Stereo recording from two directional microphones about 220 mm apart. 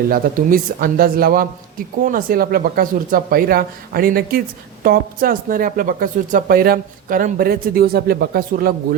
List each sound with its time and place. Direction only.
0.1 s speech: 40° right (ahead or behind)